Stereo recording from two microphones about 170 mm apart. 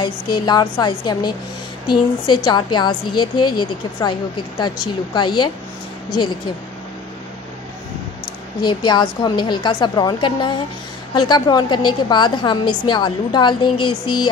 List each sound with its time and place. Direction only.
0.0 s a woman's voice: 25° left (ahead or behind)
8.5 s a woman's voice: 25° left (ahead or behind)